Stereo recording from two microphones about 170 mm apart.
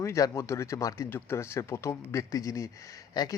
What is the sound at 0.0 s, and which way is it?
Speech, 15° left (ahead or behind).